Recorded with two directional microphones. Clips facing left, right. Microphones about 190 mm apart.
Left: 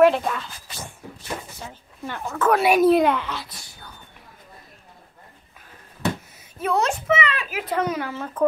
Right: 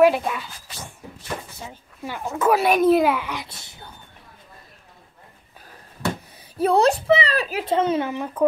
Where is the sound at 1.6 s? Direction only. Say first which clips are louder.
Even; 10° right (ahead or behind).